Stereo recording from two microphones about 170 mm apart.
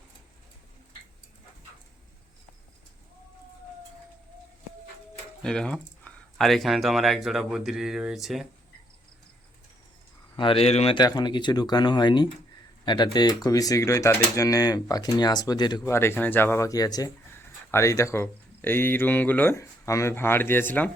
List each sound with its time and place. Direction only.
5.4 s speech: 5° left (ahead or behind)
10.3 s speech: 30° left (ahead or behind)
15.8 s speech: 15° left (ahead or behind)